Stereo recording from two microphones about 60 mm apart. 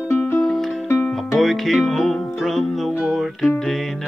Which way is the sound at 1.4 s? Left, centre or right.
Centre.